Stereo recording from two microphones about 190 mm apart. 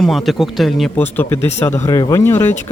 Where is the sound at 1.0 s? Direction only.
10° left (ahead or behind).